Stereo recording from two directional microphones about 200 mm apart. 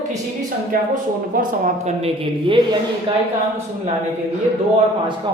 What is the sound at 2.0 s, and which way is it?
Speech, 25° right (ahead or behind).